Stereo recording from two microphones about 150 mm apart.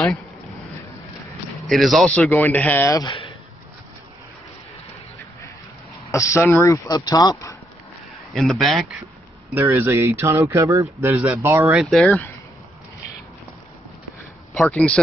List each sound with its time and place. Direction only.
1.7 s speech: centre (ahead or behind)
3.0 s speech: 35° left (ahead or behind)
6.1 s speech: 20° left (ahead or behind)
8.4 s speech: centre (ahead or behind)
9.5 s speech: 15° right (ahead or behind)
11.7 s speech: centre (ahead or behind)
14.5 s speech: 5° left (ahead or behind)